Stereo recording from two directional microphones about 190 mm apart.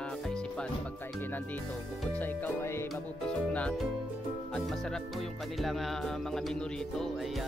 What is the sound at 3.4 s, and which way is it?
Speech, 5° left (ahead or behind).